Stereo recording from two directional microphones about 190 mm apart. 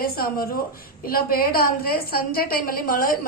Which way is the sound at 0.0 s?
50° left (ahead or behind).